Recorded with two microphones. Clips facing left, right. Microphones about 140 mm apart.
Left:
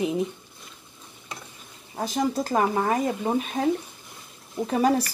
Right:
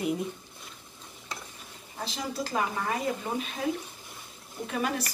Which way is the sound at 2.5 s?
40° left (ahead or behind).